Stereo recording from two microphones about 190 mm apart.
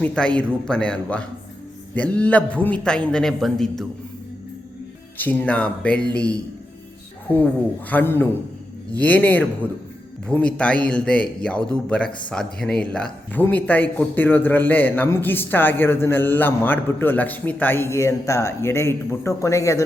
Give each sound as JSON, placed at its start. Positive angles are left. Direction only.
{"t": 0.0, "sound": "a man's voice", "side_deg": 5}
{"t": 5.1, "sound": "speech", "side_deg": 10}
{"t": 7.9, "sound": "a man's voice", "side_deg": 10}